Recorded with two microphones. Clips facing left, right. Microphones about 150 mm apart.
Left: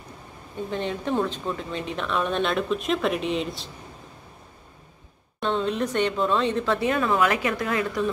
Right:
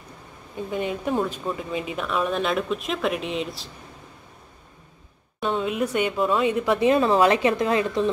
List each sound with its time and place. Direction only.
0.7 s speech: 10° right (ahead or behind)
5.4 s speech: 5° right (ahead or behind); by 8.1 s 25° right (ahead or behind)